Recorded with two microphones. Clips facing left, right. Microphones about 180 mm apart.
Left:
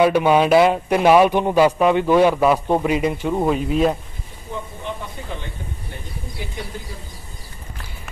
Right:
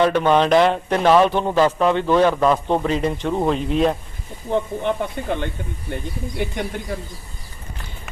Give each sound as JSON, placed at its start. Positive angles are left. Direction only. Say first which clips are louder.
{"t": 0.0, "sound": "speech", "louder": "left 1 dB", "side_deg": 10}
{"t": 4.5, "sound": "speech", "louder": "right 9 dB", "side_deg": -65}